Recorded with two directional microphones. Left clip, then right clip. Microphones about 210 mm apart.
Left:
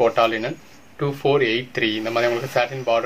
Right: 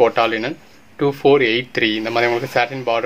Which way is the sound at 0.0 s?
50° right (ahead or behind).